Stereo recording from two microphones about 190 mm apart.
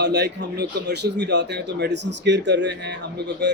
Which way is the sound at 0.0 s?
60° right (ahead or behind).